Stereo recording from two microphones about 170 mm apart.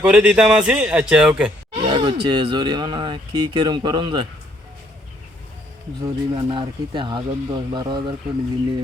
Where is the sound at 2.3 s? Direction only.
25° right (ahead or behind).